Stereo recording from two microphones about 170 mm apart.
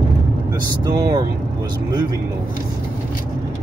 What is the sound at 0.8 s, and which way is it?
Speech, 25° right (ahead or behind).